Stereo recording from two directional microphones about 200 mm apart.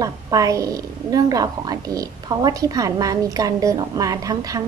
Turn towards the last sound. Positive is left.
turn(degrees=-15)  # may be behind; listen again after turning